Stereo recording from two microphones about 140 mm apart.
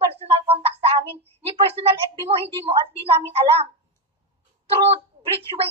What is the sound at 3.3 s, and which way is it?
Speech, 45° right (ahead or behind).